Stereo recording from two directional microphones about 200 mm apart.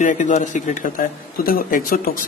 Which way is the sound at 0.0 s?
40° left (ahead or behind).